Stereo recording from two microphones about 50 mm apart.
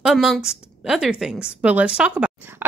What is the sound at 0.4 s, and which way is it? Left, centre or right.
A woman's voice, centre.